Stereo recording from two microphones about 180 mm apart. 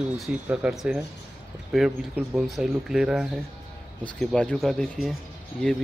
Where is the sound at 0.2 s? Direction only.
5° right (ahead or behind).